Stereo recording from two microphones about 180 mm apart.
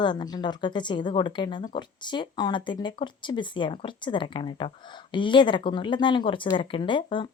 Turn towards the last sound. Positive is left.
turn(degrees=25)  # may be behind; listen again after turning